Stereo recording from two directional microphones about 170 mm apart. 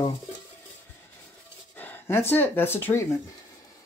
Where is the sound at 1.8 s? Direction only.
10° left (ahead or behind).